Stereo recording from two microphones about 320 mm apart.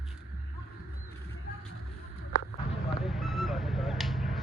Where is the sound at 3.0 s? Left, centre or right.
Centre.